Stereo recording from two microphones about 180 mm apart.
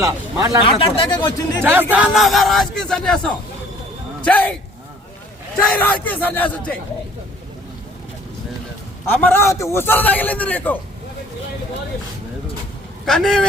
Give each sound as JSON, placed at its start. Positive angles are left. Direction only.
{"t": 0.0, "sound": "speech", "side_deg": -20}
{"t": 0.6, "sound": "speech", "side_deg": 30}
{"t": 1.6, "sound": "speech", "side_deg": -10}
{"t": 5.6, "sound": "a man's voice", "side_deg": 10}
{"t": 9.0, "sound": "a man's voice", "side_deg": 10}
{"t": 13.1, "sound": "speech", "side_deg": 5}